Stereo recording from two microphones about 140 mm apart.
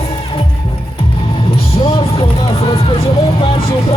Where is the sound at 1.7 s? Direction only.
40° left (ahead or behind).